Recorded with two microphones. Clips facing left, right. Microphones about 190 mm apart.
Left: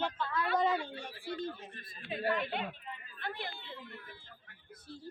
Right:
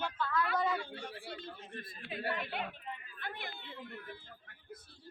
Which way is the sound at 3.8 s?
45° right (ahead or behind).